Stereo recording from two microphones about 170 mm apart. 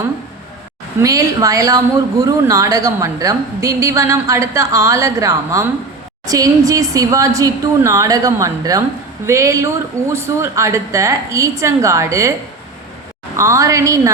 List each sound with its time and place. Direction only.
0.9 s a woman's voice: 20° right (ahead or behind)
13.3 s speech: 20° right (ahead or behind)